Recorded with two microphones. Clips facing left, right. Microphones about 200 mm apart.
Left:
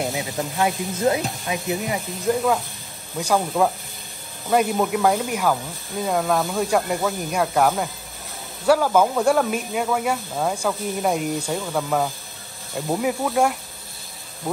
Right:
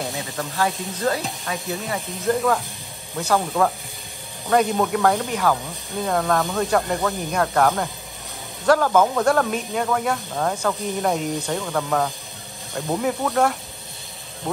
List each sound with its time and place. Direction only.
0.1 s speech: 15° left (ahead or behind)
2.0 s speech: centre (ahead or behind)
3.2 s speech: 10° left (ahead or behind)